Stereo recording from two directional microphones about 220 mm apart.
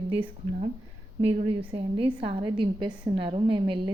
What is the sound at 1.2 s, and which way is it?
A woman's voice, 25° right (ahead or behind).